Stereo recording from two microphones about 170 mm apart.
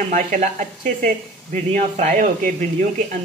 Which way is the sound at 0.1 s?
45° right (ahead or behind).